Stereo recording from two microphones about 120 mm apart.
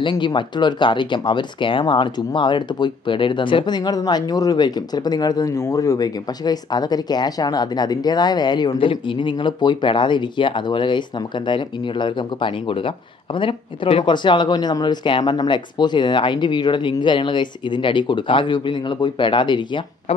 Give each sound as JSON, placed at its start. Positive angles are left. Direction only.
{"t": 0.0, "sound": "speech", "side_deg": 40}